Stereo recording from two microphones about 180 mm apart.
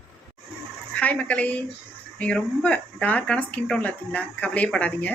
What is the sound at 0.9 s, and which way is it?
A woman's voice, 10° left (ahead or behind).